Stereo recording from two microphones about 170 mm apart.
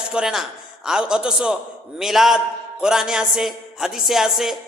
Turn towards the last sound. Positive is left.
turn(degrees=0)  # may be behind; listen again after turning